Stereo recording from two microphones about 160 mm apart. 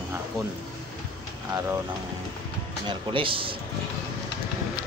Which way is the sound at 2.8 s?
30° right (ahead or behind).